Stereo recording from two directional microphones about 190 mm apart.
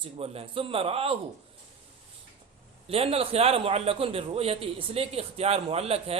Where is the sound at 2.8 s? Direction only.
30° right (ahead or behind).